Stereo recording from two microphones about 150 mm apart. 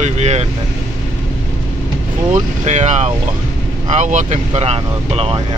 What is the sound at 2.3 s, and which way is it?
Speech, 50° right (ahead or behind).